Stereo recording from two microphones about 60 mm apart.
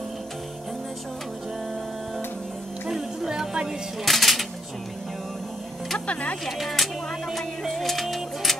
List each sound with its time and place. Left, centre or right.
2.9 s music: centre
4.0 s speech: centre
5.9 s speech: left
6.4 s speech: centre
7.3 s music: centre